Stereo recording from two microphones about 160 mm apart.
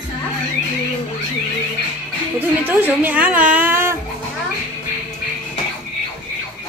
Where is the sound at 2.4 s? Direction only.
10° right (ahead or behind).